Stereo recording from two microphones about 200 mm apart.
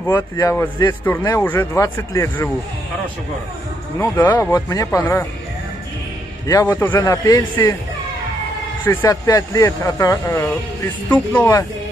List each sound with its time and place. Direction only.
0.0 s speech: 15° left (ahead or behind)
4.0 s speech: 10° left (ahead or behind)
6.4 s speech: 15° left (ahead or behind)
8.8 s speech: 15° left (ahead or behind)